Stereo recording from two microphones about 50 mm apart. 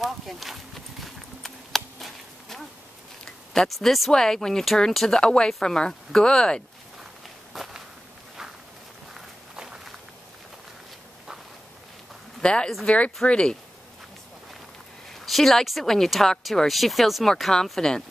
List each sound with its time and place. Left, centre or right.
0.0 s clip-clop: centre
3.3 s a sound: centre
4.1 s speech: centre
7.5 s walk: centre
12.4 s speech: centre
15.1 s speech: centre